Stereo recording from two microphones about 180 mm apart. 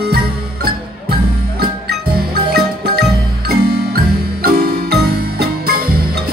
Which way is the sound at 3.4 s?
60° right (ahead or behind).